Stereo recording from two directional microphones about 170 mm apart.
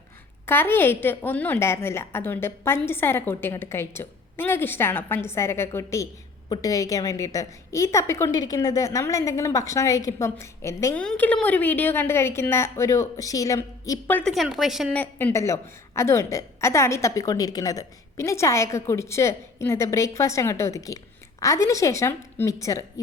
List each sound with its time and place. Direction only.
0.4 s a woman's voice: 15° left (ahead or behind)
11.0 s a woman's voice: 5° left (ahead or behind)
14.3 s speech: centre (ahead or behind)
14.9 s a woman's voice: 10° left (ahead or behind)